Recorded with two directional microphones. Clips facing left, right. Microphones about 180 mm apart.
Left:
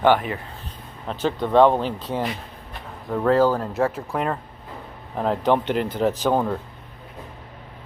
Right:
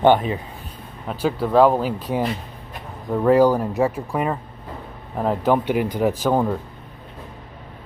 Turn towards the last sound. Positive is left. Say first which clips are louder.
# right 1 dB
turn(degrees=-10)  # may be behind; listen again after turning